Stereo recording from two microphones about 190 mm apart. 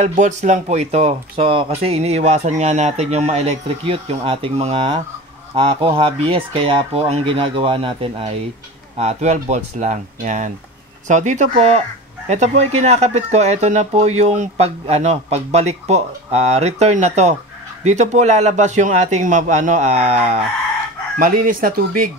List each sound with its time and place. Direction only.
0.0 s speech: 40° right (ahead or behind)
21.2 s speech: 45° right (ahead or behind)